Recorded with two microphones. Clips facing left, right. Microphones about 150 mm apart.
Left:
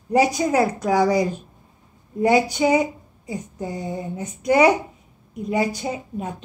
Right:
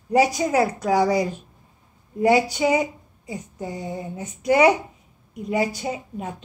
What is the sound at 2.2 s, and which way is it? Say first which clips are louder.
Speech: even; 20° left (ahead or behind).